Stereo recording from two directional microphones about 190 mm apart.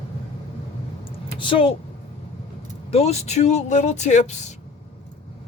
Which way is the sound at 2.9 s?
35° left (ahead or behind).